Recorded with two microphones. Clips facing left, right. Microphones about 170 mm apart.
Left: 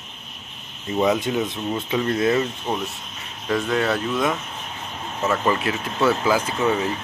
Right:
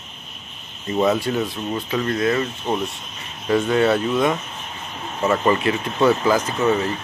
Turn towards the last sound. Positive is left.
turn(degrees=10)  # may be behind; listen again after turning